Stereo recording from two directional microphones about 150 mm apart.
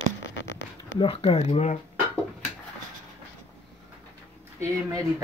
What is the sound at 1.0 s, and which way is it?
Speech, 40° left (ahead or behind).